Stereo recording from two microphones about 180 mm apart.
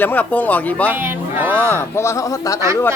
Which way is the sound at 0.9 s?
10° right (ahead or behind).